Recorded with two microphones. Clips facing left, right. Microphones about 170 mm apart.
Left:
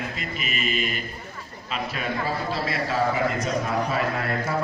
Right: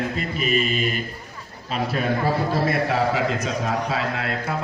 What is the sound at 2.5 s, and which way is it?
A man's voice, 50° right (ahead or behind).